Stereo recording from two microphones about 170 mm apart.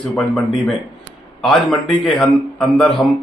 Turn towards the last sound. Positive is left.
turn(degrees=0)  # may be behind; listen again after turning